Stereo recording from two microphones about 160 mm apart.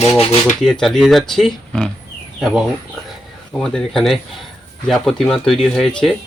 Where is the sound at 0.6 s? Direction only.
Centre (ahead or behind).